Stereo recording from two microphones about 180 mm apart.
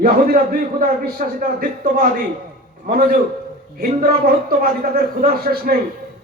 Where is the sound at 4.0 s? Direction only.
55° right (ahead or behind).